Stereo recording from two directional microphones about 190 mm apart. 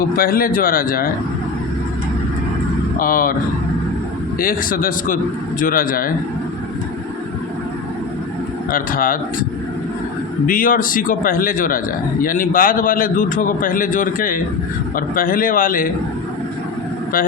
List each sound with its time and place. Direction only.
0.0 s a man's voice: 50° left (ahead or behind)
3.0 s a man's voice: 45° left (ahead or behind)
4.4 s a man's voice: 50° left (ahead or behind)
8.7 s a man's voice: 45° left (ahead or behind)
10.4 s a man's voice: 45° left (ahead or behind)